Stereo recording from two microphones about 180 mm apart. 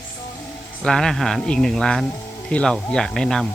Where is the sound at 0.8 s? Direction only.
5° left (ahead or behind).